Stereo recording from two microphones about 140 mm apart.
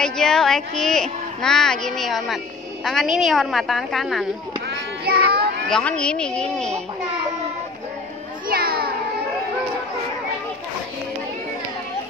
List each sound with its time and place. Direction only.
0.0 s a woman's voice: 5° left (ahead or behind)
5.1 s speech: 90° right
5.7 s a woman's voice: 5° left (ahead or behind)
8.5 s children playing: 90° right